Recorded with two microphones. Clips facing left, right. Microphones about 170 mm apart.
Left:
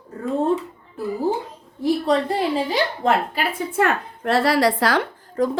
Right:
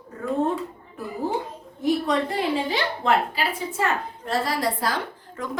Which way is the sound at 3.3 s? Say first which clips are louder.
Left 4 dB; 60° left (ahead or behind).